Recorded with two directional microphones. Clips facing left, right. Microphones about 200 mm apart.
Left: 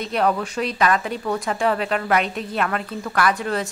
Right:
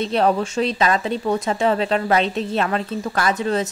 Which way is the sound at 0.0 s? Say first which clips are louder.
Right 3 dB; 30° right (ahead or behind).